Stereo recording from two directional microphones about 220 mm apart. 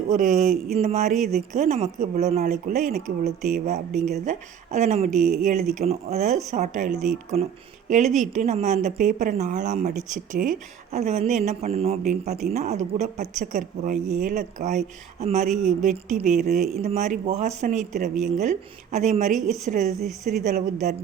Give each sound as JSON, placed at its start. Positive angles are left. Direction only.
{"t": 0.1, "sound": "speech", "side_deg": -35}
{"t": 1.1, "sound": "a woman's voice", "side_deg": 0}
{"t": 1.5, "sound": "speech", "side_deg": -30}
{"t": 5.2, "sound": "a woman's voice", "side_deg": 0}
{"t": 5.7, "sound": "speech", "side_deg": -30}
{"t": 16.5, "sound": "a woman's voice", "side_deg": 0}
{"t": 16.8, "sound": "speech", "side_deg": -30}
{"t": 19.4, "sound": "a woman's voice", "side_deg": 0}
{"t": 19.6, "sound": "speech", "side_deg": -35}
{"t": 20.0, "sound": "a woman's voice", "side_deg": 0}
{"t": 20.4, "sound": "speech", "side_deg": -35}